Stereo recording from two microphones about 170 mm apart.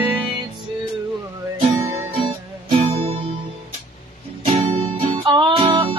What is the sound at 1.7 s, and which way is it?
Music, 20° right (ahead or behind).